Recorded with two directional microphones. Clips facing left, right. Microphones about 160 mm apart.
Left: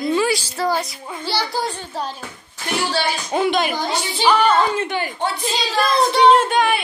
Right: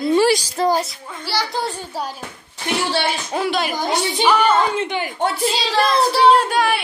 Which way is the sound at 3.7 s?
20° right (ahead or behind).